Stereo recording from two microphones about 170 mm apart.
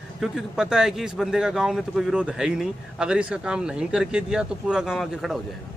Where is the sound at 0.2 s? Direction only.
5° right (ahead or behind).